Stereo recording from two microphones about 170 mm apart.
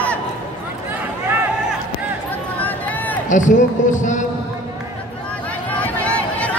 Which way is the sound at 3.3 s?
45° left (ahead or behind).